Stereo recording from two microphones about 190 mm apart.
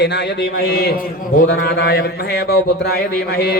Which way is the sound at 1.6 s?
60° left (ahead or behind).